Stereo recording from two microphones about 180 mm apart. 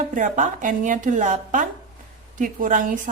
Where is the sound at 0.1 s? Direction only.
45° right (ahead or behind).